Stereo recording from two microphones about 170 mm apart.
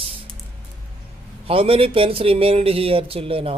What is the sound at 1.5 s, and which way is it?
Speech, 35° right (ahead or behind).